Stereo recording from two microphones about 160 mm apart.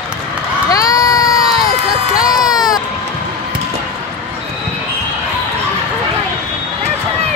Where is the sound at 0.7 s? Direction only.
20° left (ahead or behind).